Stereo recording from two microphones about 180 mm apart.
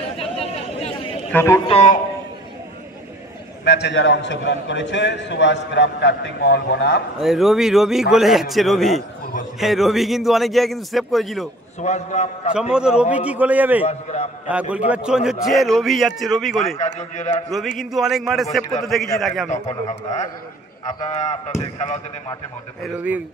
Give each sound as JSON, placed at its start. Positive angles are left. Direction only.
{"t": 0.2, "sound": "a sound", "side_deg": 35}
{"t": 1.3, "sound": "a man's voice", "side_deg": 15}
{"t": 1.7, "sound": "a man's voice", "side_deg": 40}
{"t": 3.6, "sound": "a man's voice", "side_deg": 70}
{"t": 7.2, "sound": "a man's voice", "side_deg": 0}
{"t": 11.8, "sound": "a man's voice", "side_deg": 40}
{"t": 12.5, "sound": "a man's voice", "side_deg": -5}
{"t": 13.8, "sound": "a man's voice", "side_deg": 35}
{"t": 14.5, "sound": "a man's voice", "side_deg": -5}
{"t": 16.7, "sound": "a man's voice", "side_deg": 40}
{"t": 17.5, "sound": "a man's voice", "side_deg": 0}
{"t": 19.5, "sound": "a man's voice", "side_deg": 35}
{"t": 22.9, "sound": "a man's voice", "side_deg": -10}